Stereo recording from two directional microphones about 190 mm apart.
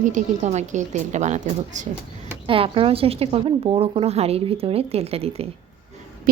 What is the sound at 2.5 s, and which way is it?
Speech, 30° right (ahead or behind).